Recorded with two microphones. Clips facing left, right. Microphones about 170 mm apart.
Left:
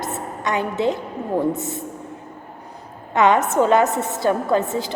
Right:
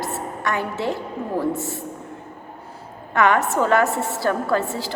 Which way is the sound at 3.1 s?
20° left (ahead or behind).